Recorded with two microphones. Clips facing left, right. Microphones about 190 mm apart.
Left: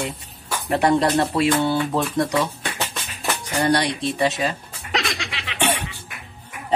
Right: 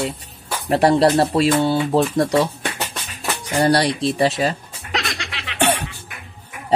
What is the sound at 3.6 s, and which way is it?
Speech, 35° right (ahead or behind).